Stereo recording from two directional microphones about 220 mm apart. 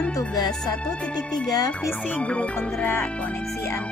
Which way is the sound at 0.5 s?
5° left (ahead or behind).